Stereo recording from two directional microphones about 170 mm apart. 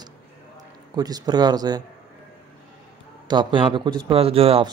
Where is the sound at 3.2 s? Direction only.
30° right (ahead or behind).